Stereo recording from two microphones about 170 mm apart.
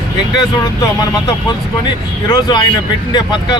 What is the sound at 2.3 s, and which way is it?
Speech, 25° left (ahead or behind).